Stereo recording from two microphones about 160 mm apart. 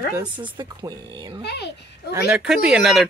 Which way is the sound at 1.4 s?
90° left.